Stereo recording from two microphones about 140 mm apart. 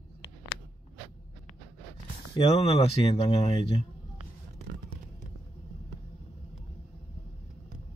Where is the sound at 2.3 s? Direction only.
45° left (ahead or behind).